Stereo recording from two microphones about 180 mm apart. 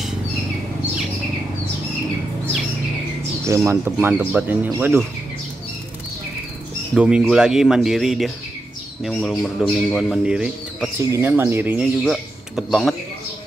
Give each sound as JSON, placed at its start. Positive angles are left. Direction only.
{"t": 3.4, "sound": "speech", "side_deg": -15}
{"t": 7.0, "sound": "speech", "side_deg": -5}
{"t": 11.0, "sound": "speech", "side_deg": -15}
{"t": 12.0, "sound": "speech", "side_deg": 0}